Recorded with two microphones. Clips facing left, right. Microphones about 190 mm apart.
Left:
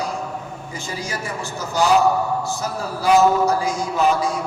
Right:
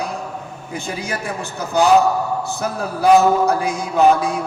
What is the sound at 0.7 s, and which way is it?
A man's voice, 60° right (ahead or behind).